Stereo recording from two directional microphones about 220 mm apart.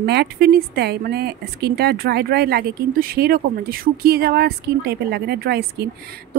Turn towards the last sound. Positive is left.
turn(degrees=-45)  # may be behind; listen again after turning